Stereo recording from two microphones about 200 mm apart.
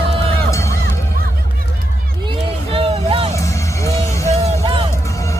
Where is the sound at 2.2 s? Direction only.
25° right (ahead or behind).